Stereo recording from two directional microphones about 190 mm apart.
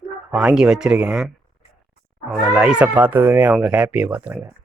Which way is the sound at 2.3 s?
5° right (ahead or behind).